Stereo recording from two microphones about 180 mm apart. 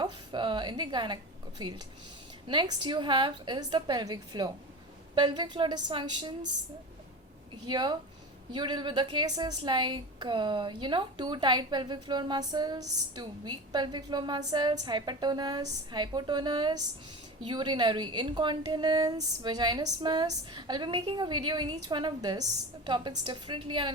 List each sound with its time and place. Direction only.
0.0 s a sound: 25° right (ahead or behind)
2.5 s a woman's voice: 25° right (ahead or behind)
7.7 s a woman's voice: 25° right (ahead or behind)